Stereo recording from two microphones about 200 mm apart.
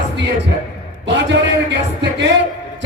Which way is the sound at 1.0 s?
60° right (ahead or behind).